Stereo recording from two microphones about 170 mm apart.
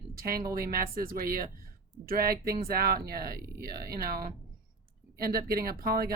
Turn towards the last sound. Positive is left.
turn(degrees=-60)  # may be behind; listen again after turning